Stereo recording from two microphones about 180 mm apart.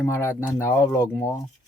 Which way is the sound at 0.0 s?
15° left (ahead or behind).